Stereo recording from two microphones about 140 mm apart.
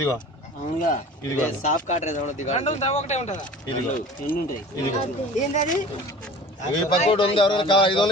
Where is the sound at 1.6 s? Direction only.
60° left (ahead or behind).